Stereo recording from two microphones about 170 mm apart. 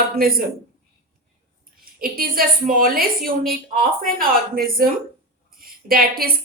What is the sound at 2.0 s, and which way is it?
A woman's voice, 55° right (ahead or behind).